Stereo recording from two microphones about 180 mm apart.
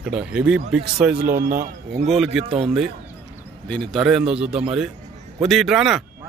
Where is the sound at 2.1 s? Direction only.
Centre (ahead or behind).